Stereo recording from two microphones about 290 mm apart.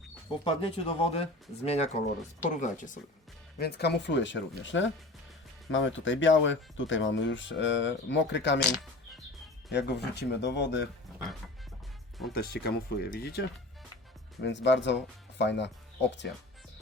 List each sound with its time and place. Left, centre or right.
0.4 s speech: centre; by 8.6 s left
9.7 s speech: left
12.3 s speech: left
14.4 s speech: left